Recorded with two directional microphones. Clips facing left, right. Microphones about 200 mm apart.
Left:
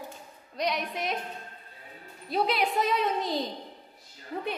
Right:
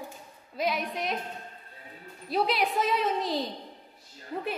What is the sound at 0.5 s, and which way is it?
Speech, centre (ahead or behind).